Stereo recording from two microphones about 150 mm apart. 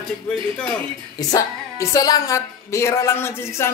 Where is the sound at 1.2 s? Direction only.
20° left (ahead or behind).